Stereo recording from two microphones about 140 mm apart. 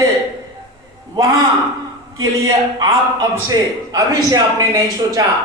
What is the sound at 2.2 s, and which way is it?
A man's voice, 25° right (ahead or behind).